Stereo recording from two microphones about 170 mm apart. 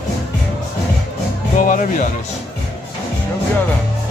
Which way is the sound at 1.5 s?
50° left (ahead or behind).